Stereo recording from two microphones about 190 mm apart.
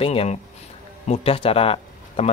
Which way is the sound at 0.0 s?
30° left (ahead or behind).